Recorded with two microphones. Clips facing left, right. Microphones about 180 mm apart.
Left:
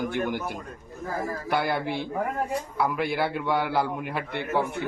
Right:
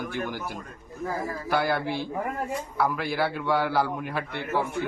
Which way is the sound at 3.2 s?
15° left (ahead or behind).